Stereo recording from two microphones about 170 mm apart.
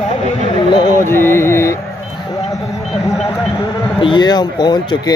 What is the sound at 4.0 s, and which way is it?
Speech, 25° left (ahead or behind).